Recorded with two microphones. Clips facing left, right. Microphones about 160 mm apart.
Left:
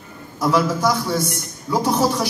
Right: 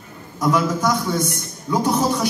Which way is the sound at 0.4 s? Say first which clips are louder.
Left 1 dB; 10° left (ahead or behind).